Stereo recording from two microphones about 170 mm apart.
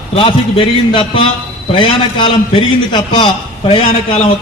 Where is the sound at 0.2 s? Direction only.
30° left (ahead or behind).